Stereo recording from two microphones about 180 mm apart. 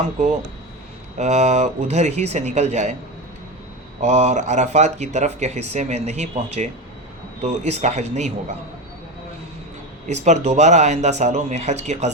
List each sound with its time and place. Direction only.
1.2 s speech: 40° right (ahead or behind)
4.0 s speech: 40° right (ahead or behind)
10.1 s speech: 40° right (ahead or behind)